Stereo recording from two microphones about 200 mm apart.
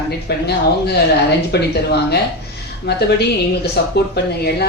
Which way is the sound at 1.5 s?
55° left (ahead or behind).